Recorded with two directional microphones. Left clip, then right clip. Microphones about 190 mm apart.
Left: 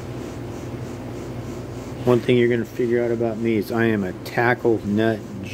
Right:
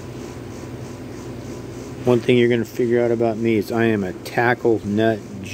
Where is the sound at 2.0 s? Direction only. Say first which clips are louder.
Right 1 dB; 10° right (ahead or behind); by 3.5 s 30° right (ahead or behind).